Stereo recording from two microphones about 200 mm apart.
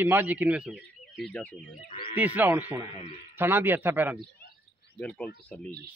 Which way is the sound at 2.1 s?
10° right (ahead or behind).